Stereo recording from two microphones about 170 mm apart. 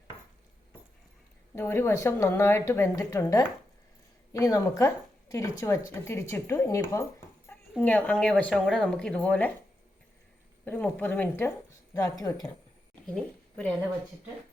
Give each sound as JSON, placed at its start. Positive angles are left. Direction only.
{"t": 1.5, "sound": "a woman's voice", "side_deg": 15}
{"t": 10.7, "sound": "a woman's voice", "side_deg": 10}
{"t": 13.1, "sound": "a woman's voice", "side_deg": 5}